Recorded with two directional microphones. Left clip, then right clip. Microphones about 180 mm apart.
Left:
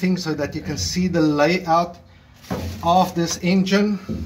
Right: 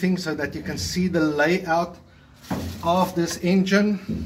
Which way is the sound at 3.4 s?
55° left (ahead or behind).